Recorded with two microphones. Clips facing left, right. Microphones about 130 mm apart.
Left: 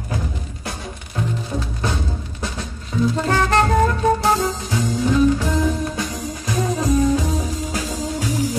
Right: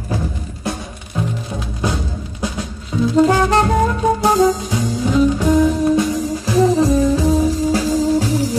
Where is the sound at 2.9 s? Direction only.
15° right (ahead or behind); by 8.3 s 35° right (ahead or behind).